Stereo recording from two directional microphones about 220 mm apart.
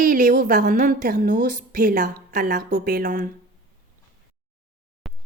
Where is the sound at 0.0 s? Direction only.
40° right (ahead or behind).